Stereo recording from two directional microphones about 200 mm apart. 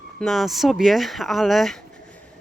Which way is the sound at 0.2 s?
Centre (ahead or behind).